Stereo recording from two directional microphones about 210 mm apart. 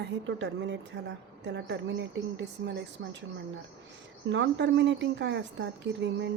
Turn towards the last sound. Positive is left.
turn(degrees=-55)  # may be behind; listen again after turning